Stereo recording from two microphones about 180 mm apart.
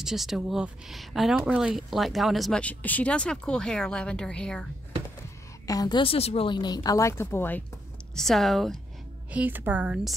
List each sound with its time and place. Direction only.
0.0 s speech: centre (ahead or behind)
5.7 s a woman's voice: 20° left (ahead or behind); by 8.7 s centre (ahead or behind)
9.3 s a woman's voice: 10° right (ahead or behind)